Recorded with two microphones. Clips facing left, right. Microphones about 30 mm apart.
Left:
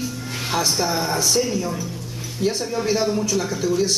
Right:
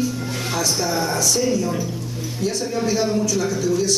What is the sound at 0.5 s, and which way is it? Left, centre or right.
Speech, centre.